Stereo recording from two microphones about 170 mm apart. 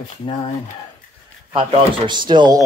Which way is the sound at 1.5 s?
30° right (ahead or behind).